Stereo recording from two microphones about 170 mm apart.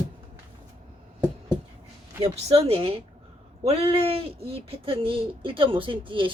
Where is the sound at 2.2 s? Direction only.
35° right (ahead or behind).